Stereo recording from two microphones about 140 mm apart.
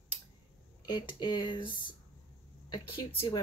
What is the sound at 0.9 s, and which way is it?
Speech, 35° left (ahead or behind).